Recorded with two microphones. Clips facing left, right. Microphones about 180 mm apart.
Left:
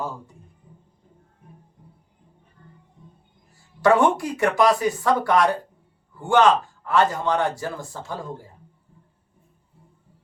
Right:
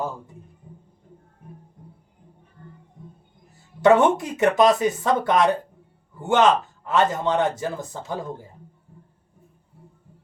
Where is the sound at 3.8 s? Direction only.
20° right (ahead or behind).